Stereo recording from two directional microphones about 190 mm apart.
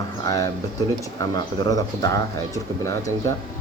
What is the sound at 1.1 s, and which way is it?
Speech, 20° left (ahead or behind).